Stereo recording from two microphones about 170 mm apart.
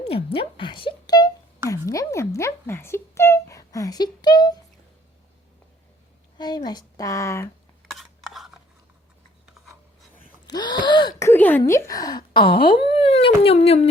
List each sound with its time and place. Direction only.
0.0 s speech: 35° left (ahead or behind)
6.3 s speech: 25° left (ahead or behind)
7.9 s a sound: centre (ahead or behind)
9.6 s filing: centre (ahead or behind)
10.5 s speech: 25° left (ahead or behind)